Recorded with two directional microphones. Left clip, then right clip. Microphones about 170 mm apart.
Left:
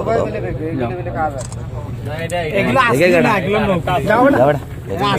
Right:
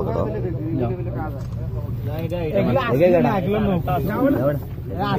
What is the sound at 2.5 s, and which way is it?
Speech, 20° left (ahead or behind).